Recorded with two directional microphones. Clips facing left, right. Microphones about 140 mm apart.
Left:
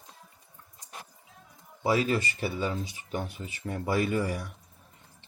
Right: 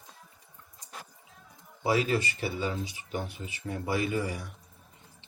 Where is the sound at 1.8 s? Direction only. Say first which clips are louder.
Left 1 dB; 35° left (ahead or behind).